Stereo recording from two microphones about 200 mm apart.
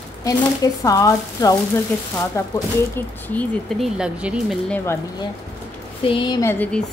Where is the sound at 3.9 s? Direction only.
5° right (ahead or behind).